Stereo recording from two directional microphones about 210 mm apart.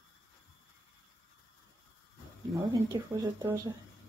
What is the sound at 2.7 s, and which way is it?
Speech, 15° right (ahead or behind).